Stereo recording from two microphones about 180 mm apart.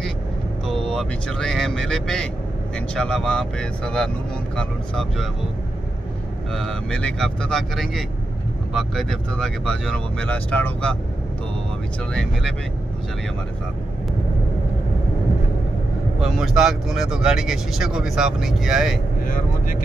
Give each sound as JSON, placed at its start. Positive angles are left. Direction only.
{"t": 0.8, "sound": "speech", "side_deg": 0}
{"t": 6.5, "sound": "speech", "side_deg": 5}
{"t": 12.1, "sound": "speech", "side_deg": 5}
{"t": 16.2, "sound": "speech", "side_deg": 0}
{"t": 19.2, "sound": "speech", "side_deg": 50}